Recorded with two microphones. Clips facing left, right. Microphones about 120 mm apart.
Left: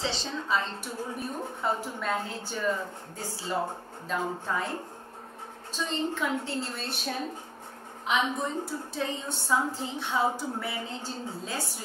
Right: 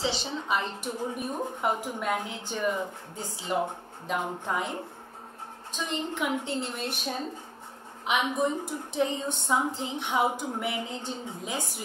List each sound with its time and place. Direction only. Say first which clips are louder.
0.3 s a woman's voice: even; 15° right (ahead or behind)
5.8 s a woman's voice: left 1 dB; 15° right (ahead or behind)
8.1 s a woman's voice: right 2 dB; 15° right (ahead or behind)